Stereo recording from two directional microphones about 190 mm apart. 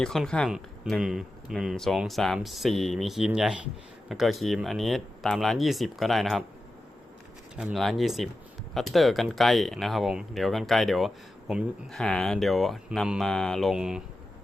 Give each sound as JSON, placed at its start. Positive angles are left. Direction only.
{"t": 0.0, "sound": "speech", "side_deg": 0}
{"t": 7.5, "sound": "speech", "side_deg": 0}